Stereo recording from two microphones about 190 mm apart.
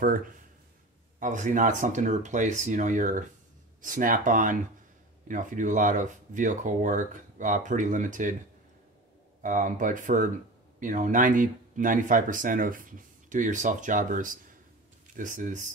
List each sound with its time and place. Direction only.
0.0 s speech: 50° right (ahead or behind)
9.4 s speech: 45° right (ahead or behind)